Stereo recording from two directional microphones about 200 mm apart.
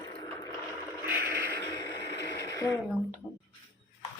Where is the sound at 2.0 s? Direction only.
55° left (ahead or behind).